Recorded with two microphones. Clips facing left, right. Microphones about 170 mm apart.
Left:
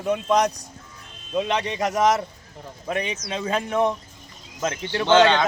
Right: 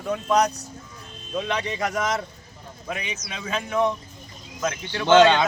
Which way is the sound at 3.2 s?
35° left (ahead or behind).